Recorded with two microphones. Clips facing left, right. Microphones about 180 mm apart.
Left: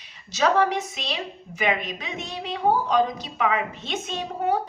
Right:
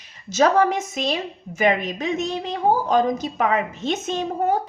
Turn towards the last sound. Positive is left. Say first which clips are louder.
# right 4 dB
turn(degrees=-45)  # may be behind; listen again after turning